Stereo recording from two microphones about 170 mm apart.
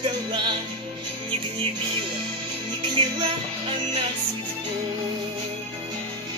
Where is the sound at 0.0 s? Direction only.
30° right (ahead or behind).